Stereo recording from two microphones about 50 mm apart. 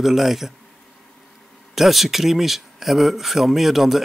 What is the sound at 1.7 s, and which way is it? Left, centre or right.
Speech, centre.